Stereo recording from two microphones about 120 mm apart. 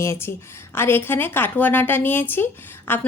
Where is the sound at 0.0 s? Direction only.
20° left (ahead or behind).